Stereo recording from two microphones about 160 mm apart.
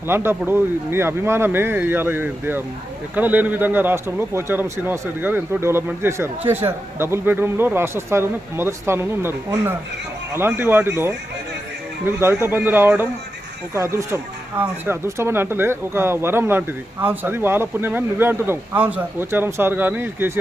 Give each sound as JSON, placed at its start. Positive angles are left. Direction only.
{"t": 0.1, "sound": "a man's voice", "side_deg": -15}